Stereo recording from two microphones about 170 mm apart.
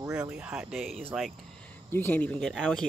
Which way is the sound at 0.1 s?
5° right (ahead or behind).